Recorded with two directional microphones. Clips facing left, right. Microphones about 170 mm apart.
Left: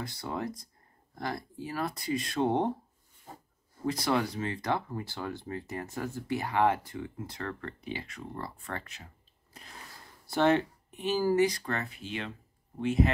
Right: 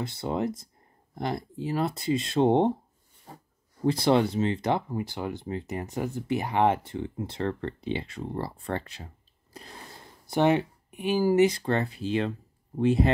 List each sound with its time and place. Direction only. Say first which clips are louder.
0.0 s speech: right 6 dB; 25° right (ahead or behind)
3.8 s speech: right 7 dB; 30° right (ahead or behind)
10.2 s speech: right 2 dB; 15° right (ahead or behind); by 13.1 s 35° right (ahead or behind)